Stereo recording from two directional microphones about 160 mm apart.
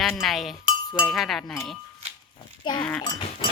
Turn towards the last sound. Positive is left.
turn(degrees=30)  # may be behind; listen again after turning